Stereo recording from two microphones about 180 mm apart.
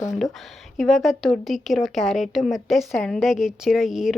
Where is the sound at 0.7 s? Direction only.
Centre (ahead or behind).